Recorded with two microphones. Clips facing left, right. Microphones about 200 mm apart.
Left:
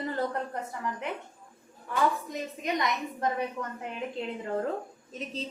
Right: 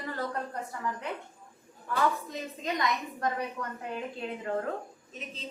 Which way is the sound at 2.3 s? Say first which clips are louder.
Left 2 dB; 20° left (ahead or behind).